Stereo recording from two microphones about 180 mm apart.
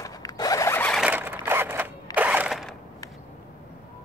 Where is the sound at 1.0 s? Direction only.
10° right (ahead or behind).